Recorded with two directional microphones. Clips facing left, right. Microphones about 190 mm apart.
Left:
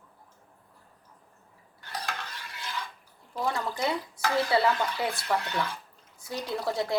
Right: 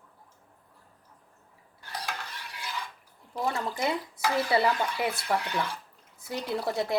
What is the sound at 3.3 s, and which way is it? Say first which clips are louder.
Speech: even; 15° right (ahead or behind).